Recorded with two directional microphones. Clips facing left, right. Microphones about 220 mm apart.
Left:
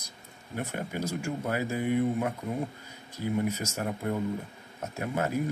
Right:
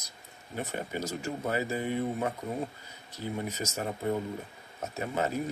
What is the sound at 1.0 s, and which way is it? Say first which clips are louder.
Speech: left 2 dB; 10° left (ahead or behind).